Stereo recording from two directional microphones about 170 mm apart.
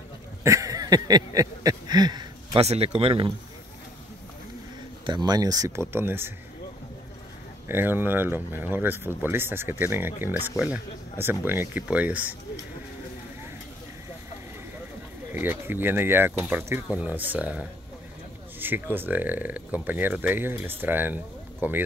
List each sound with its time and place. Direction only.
0.4 s a sound: 15° right (ahead or behind)
2.6 s speech: 35° right (ahead or behind)
5.0 s speech: 25° right (ahead or behind)
7.6 s speech: 10° right (ahead or behind)
15.3 s speech: 15° right (ahead or behind)